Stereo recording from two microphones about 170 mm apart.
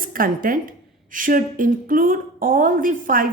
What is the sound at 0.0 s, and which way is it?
A woman's voice, 55° right (ahead or behind).